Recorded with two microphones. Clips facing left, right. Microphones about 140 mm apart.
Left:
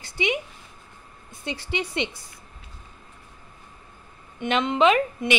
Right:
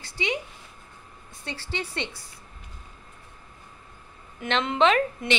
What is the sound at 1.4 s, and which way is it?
Speech, 15° left (ahead or behind).